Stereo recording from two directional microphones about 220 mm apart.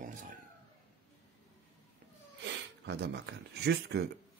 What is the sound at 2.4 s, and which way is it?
Speech, 50° right (ahead or behind).